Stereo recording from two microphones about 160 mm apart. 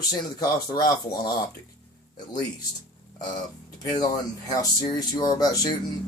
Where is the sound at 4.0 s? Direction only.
25° left (ahead or behind).